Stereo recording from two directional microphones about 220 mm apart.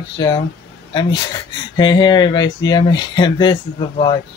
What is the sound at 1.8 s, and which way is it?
Speech, 20° left (ahead or behind).